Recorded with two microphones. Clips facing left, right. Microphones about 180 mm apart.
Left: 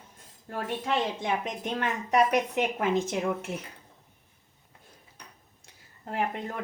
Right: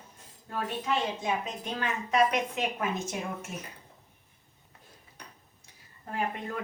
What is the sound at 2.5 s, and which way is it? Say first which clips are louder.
Speech: left 5 dB; 90° left.